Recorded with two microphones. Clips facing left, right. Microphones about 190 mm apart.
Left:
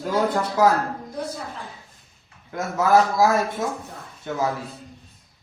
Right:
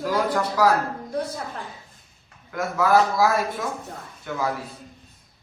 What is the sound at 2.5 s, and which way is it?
A man's voice, 25° left (ahead or behind).